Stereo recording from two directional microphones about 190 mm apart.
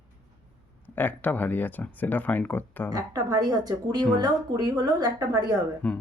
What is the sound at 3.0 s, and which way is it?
Speech, 20° right (ahead or behind).